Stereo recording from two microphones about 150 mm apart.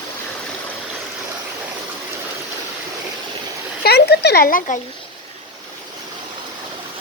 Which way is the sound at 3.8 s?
90° left.